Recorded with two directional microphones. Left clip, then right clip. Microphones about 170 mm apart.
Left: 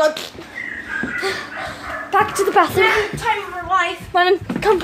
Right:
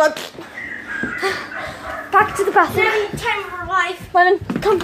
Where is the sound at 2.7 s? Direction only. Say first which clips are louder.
Left 2 dB; 30° left (ahead or behind).